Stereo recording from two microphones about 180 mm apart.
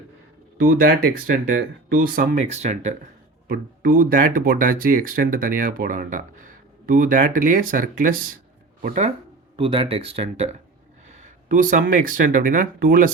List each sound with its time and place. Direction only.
0.6 s speech: 50° right (ahead or behind)
2.5 s speech: 40° right (ahead or behind)
3.4 s speech: 55° right (ahead or behind)
9.6 s speech: 30° right (ahead or behind); by 13.1 s 50° right (ahead or behind)